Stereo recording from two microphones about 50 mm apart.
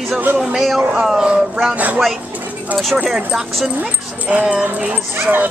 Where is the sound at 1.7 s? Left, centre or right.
Right.